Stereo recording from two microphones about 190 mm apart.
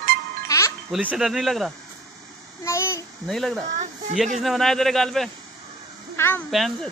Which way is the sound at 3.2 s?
Centre (ahead or behind).